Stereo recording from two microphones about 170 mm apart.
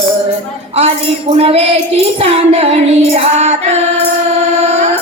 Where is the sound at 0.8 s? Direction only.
35° right (ahead or behind).